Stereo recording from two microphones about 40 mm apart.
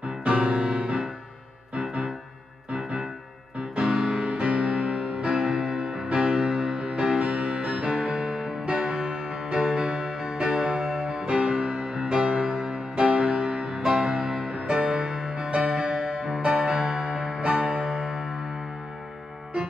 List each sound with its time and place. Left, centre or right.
0.0 s music: right
3.7 s music: right
5.3 s music: centre; by 13.7 s right
13.7 s music: centre
14.7 s music: right
16.3 s music: right